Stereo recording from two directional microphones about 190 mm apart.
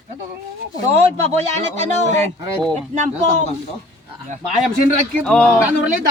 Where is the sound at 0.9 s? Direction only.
35° right (ahead or behind).